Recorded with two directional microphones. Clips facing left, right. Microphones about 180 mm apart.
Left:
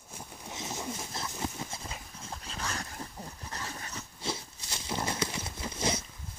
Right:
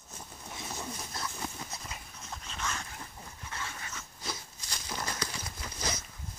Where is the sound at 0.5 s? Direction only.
20° left (ahead or behind).